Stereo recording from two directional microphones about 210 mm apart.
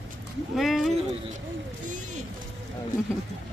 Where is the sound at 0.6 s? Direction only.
Centre (ahead or behind).